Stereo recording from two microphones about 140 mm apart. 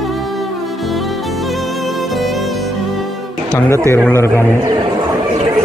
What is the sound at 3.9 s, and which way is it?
Speech, 15° left (ahead or behind).